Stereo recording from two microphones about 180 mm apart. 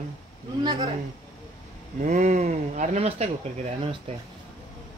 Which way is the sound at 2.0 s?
45° right (ahead or behind).